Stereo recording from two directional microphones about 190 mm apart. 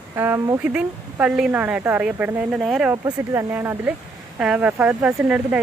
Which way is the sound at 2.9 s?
15° right (ahead or behind).